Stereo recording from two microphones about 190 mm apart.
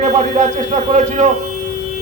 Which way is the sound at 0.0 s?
40° right (ahead or behind).